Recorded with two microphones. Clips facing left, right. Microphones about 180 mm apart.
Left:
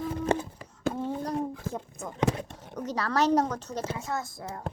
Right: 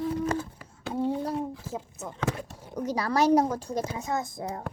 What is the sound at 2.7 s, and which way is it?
A woman's voice, 10° right (ahead or behind).